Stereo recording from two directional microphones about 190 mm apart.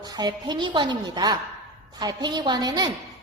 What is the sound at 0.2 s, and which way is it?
A woman's voice, 20° right (ahead or behind).